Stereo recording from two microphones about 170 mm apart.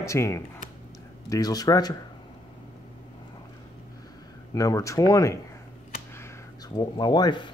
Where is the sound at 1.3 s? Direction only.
20° left (ahead or behind).